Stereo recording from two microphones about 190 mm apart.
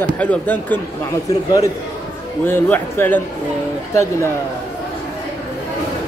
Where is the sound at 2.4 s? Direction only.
10° left (ahead or behind).